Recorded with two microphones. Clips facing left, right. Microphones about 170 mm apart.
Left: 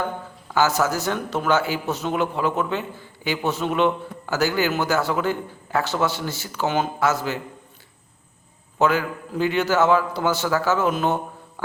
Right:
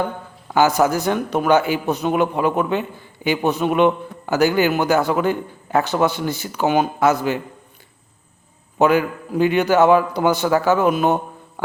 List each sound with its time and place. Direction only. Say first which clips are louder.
0.5 s a man's voice: right 5 dB; 15° right (ahead or behind)
8.8 s a man's voice: right 5 dB; 15° right (ahead or behind)